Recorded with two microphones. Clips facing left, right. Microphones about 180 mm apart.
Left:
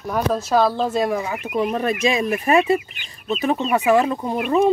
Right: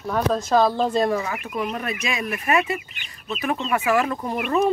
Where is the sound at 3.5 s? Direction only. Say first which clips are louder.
Left 4 dB; 15° left (ahead or behind).